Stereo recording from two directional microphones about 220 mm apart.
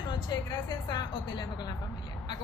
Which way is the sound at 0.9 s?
20° left (ahead or behind).